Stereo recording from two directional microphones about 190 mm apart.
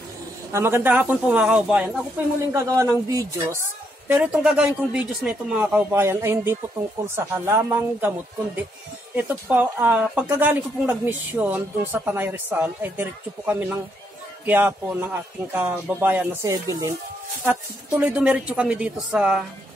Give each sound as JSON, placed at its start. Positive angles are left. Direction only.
{"t": 0.5, "sound": "speech", "side_deg": -15}
{"t": 2.5, "sound": "speech", "side_deg": -15}
{"t": 9.1, "sound": "speech", "side_deg": -10}